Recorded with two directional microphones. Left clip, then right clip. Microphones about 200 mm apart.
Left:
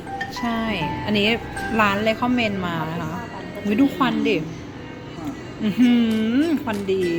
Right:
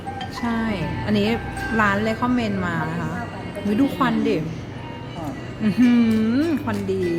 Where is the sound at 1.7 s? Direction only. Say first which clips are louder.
Left 1 dB; 10° left (ahead or behind).